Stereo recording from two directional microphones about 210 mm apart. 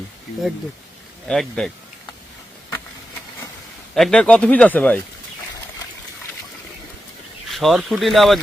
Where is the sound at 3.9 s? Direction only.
5° left (ahead or behind).